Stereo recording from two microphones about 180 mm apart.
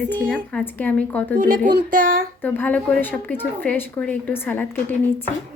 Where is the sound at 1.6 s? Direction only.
60° right (ahead or behind).